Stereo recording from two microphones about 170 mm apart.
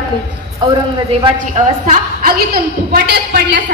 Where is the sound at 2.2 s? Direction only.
60° right (ahead or behind); by 3.6 s 80° right.